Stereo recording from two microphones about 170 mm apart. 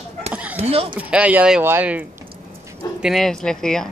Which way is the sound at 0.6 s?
35° right (ahead or behind).